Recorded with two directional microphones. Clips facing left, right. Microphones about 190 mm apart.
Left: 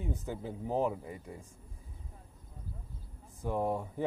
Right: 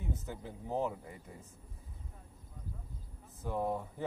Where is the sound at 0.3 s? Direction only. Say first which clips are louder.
Left 5 dB; 15° left (ahead or behind).